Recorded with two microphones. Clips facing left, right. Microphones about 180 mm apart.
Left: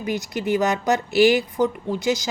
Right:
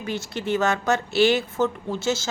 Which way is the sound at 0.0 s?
15° left (ahead or behind).